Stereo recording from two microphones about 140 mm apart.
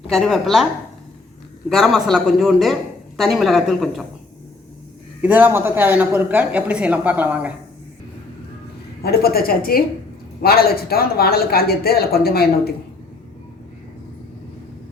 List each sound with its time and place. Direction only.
0.1 s a man's voice: centre (ahead or behind)
1.7 s a man's voice: centre (ahead or behind)
5.2 s speech: 15° right (ahead or behind)
9.0 s a woman's voice: 90° left